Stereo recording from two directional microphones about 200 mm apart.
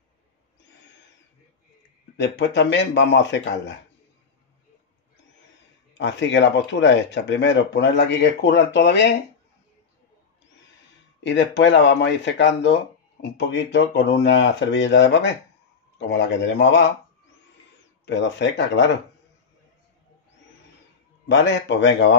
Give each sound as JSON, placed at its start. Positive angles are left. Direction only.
{"t": 2.1, "sound": "speech", "side_deg": 60}
{"t": 5.9, "sound": "speech", "side_deg": 65}
{"t": 11.2, "sound": "speech", "side_deg": 65}
{"t": 18.0, "sound": "speech", "side_deg": 60}
{"t": 21.3, "sound": "speech", "side_deg": 65}